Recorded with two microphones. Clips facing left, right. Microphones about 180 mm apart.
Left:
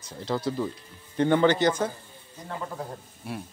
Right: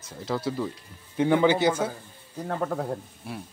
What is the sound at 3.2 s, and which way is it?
Speech, centre (ahead or behind).